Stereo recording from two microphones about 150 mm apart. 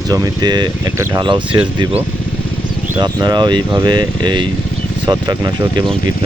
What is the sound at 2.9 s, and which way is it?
Speech, 30° right (ahead or behind).